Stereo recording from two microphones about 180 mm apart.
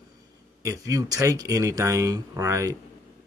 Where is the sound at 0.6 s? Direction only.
20° right (ahead or behind).